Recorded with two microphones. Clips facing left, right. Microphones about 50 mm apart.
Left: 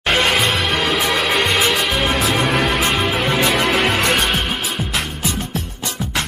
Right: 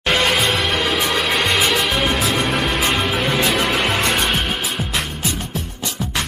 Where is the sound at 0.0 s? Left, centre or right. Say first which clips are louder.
Left 1 dB; centre.